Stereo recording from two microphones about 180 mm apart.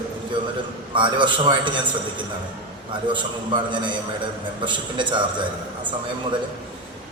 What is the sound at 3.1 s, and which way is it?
A man's voice, 25° right (ahead or behind).